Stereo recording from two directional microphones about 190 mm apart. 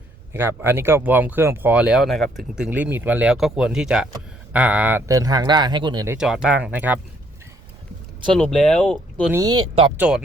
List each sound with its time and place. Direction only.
0.3 s speech: 10° right (ahead or behind)
6.1 s speech: 5° right (ahead or behind)
8.3 s speech: 5° left (ahead or behind)
9.3 s speech: 20° right (ahead or behind)
10.0 s speech: 5° right (ahead or behind)